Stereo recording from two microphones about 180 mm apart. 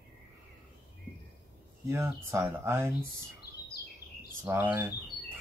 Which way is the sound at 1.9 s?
15° right (ahead or behind).